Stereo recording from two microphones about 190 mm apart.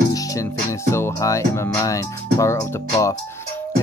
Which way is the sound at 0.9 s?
15° left (ahead or behind).